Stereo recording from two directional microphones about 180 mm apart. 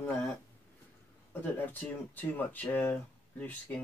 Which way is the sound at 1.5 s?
10° left (ahead or behind).